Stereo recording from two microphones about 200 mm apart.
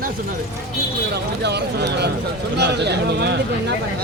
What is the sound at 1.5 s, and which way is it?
Speech, 55° right (ahead or behind).